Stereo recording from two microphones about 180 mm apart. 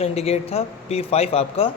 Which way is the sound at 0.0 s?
35° left (ahead or behind).